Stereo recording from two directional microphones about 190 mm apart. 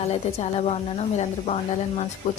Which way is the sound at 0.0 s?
35° left (ahead or behind).